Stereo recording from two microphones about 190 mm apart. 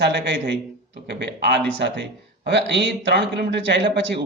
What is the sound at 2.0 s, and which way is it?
Speech, 65° right (ahead or behind).